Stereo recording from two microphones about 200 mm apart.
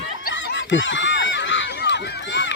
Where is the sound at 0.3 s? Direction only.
60° left (ahead or behind).